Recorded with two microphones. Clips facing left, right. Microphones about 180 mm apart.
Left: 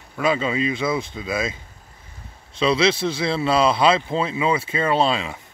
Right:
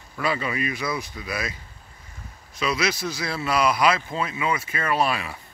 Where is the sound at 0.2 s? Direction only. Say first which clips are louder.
Left 5 dB; 20° left (ahead or behind).